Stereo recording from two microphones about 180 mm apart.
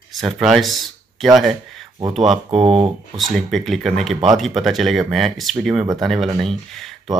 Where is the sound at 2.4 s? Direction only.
30° right (ahead or behind).